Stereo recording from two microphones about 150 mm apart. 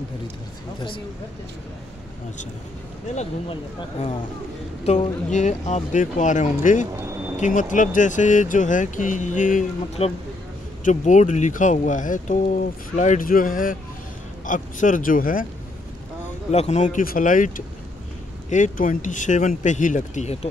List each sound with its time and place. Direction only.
0.7 s speech: 35° left (ahead or behind)
4.8 s speech: 50° left (ahead or behind)
10.0 s speech: 40° left (ahead or behind)
10.8 s speech: 55° left (ahead or behind)
16.5 s speech: 50° left (ahead or behind)